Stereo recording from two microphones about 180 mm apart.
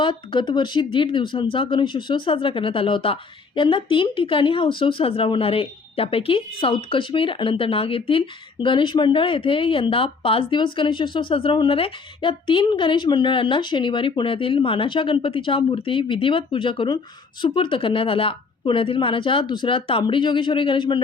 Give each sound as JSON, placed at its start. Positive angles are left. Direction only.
{"t": 0.0, "sound": "speech", "side_deg": 25}